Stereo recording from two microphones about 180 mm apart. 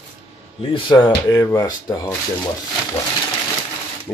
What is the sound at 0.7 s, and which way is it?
Speech, 25° left (ahead or behind).